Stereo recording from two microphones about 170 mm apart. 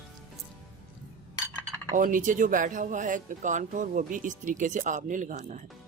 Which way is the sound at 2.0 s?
50° right (ahead or behind).